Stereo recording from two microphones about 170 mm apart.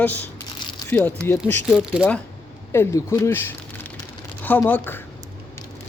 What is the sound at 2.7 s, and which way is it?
Speech, 15° left (ahead or behind).